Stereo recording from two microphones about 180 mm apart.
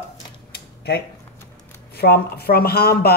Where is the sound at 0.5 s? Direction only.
65° left (ahead or behind).